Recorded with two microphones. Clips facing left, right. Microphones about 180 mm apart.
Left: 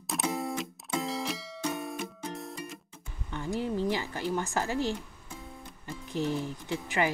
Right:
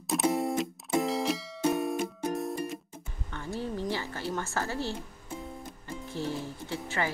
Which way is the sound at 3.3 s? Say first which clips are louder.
Left 3 dB; 15° left (ahead or behind).